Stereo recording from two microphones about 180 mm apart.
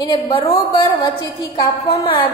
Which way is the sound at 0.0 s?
30° left (ahead or behind).